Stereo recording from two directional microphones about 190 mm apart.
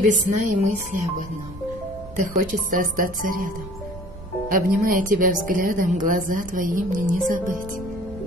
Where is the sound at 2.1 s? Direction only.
45° right (ahead or behind).